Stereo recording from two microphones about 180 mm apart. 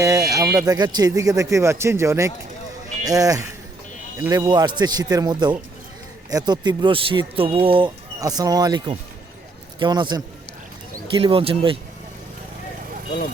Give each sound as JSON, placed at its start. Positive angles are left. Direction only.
{"t": 0.0, "sound": "speech", "side_deg": -20}